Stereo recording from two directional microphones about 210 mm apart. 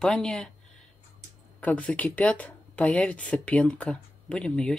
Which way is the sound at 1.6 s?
5° left (ahead or behind).